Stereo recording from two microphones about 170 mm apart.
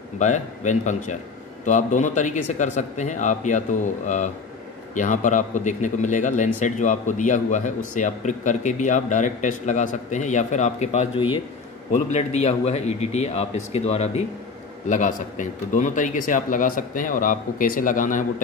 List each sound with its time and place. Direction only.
0.2 s a man's voice: 45° left (ahead or behind)